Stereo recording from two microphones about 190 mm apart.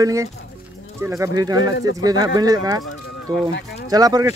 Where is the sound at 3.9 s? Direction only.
20° right (ahead or behind).